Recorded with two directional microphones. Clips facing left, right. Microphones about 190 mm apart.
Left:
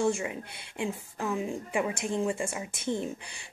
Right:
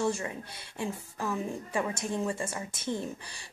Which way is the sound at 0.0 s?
15° left (ahead or behind).